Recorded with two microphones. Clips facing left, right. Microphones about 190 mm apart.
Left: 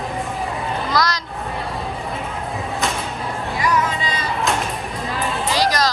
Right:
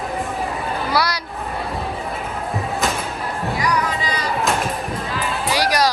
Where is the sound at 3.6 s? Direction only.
25° left (ahead or behind).